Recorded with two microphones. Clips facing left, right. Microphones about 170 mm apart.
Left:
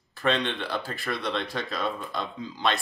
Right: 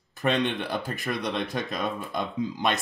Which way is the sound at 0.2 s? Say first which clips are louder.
Right 1 dB; 15° right (ahead or behind).